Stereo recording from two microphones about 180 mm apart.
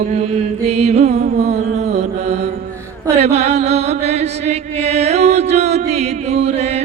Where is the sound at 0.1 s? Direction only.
35° right (ahead or behind).